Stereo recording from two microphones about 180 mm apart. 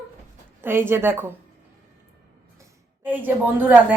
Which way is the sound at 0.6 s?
10° right (ahead or behind).